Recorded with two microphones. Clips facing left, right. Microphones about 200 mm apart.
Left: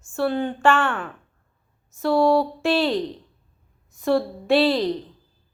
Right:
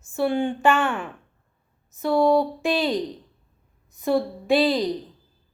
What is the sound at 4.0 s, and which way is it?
Speech, centre (ahead or behind).